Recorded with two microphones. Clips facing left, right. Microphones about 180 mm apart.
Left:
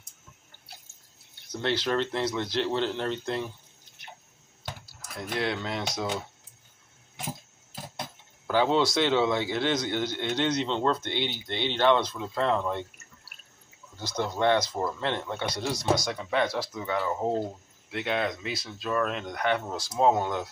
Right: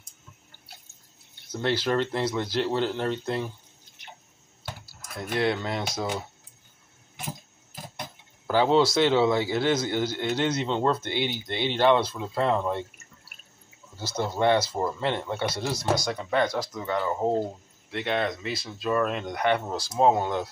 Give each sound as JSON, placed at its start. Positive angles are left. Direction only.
{"t": 1.5, "sound": "speech", "side_deg": -5}
{"t": 5.3, "sound": "speech", "side_deg": -5}
{"t": 8.5, "sound": "speech", "side_deg": -5}
{"t": 13.9, "sound": "speech", "side_deg": -5}
{"t": 19.9, "sound": "speech", "side_deg": -15}